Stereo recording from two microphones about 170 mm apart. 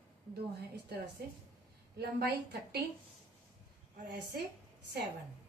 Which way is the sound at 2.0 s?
70° right (ahead or behind).